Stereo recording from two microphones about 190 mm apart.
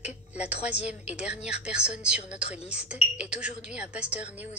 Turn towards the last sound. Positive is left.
turn(degrees=-10)  # may be behind; listen again after turning